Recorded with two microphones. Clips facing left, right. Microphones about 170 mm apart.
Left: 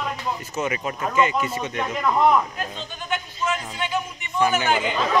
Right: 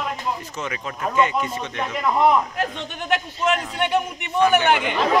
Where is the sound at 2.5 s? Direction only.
70° right (ahead or behind).